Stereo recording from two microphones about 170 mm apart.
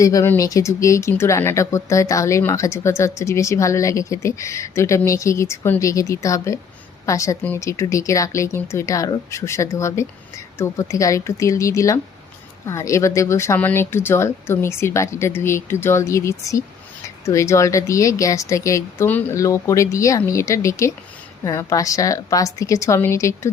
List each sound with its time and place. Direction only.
0.0 s a woman's voice: 20° left (ahead or behind)